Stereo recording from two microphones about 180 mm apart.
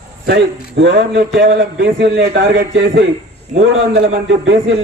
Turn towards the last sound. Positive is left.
turn(degrees=-90)